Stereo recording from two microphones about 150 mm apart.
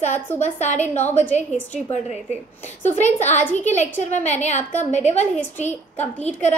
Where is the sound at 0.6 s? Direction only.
50° left (ahead or behind).